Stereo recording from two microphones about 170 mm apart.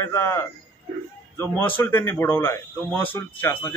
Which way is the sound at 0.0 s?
15° left (ahead or behind).